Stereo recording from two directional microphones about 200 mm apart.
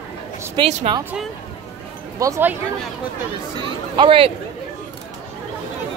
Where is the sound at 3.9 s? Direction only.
25° right (ahead or behind).